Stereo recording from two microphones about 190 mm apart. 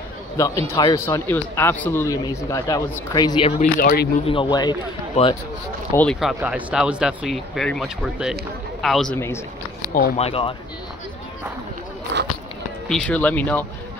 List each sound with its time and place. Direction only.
0.4 s speech: 15° left (ahead or behind)
3.8 s speech: 55° left (ahead or behind)
4.3 s speech: 25° left (ahead or behind)
5.9 s speech: centre (ahead or behind)
9.1 s speech: 15° left (ahead or behind)
10.1 s speech: 30° left (ahead or behind)
12.1 s a sound: 65° right (ahead or behind)
12.8 s speech: 5° left (ahead or behind)